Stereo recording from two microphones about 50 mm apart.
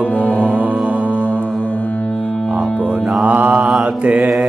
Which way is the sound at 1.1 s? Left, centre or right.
Left.